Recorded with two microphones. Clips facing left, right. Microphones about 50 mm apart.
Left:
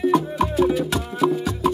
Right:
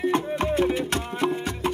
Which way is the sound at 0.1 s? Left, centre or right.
Right.